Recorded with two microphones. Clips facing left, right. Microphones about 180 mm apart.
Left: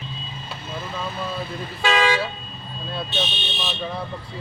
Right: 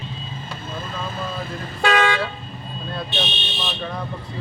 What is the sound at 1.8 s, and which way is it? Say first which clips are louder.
Toot: right 1 dB; 55° right (ahead or behind).